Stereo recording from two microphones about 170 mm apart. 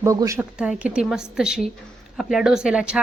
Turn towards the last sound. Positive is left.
turn(degrees=-5)  # may be behind; listen again after turning